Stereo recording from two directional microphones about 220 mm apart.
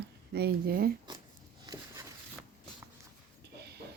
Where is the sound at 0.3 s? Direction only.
45° right (ahead or behind).